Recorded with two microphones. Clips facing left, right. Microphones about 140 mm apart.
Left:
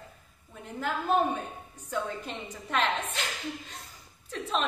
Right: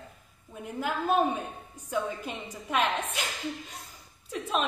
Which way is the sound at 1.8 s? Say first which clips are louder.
Right 2 dB; 10° right (ahead or behind).